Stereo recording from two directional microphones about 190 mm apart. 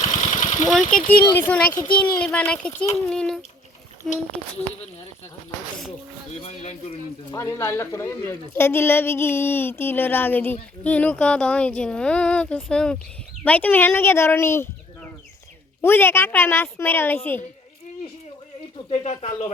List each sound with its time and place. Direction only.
0.0 s engine: 40° left (ahead or behind)
0.7 s a woman's voice: centre (ahead or behind)
1.7 s a child's voice: 20° left (ahead or behind)
2.1 s a woman's voice: 5° left (ahead or behind)
6.4 s speech: 35° left (ahead or behind)
7.3 s a woman's voice: 15° left (ahead or behind)
15.8 s a woman's voice: 10° left (ahead or behind)
18.9 s speech: 35° left (ahead or behind)